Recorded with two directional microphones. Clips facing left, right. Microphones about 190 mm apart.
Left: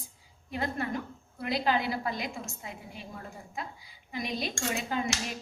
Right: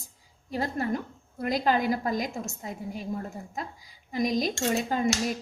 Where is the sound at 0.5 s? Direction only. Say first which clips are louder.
Right 4 dB; 35° right (ahead or behind).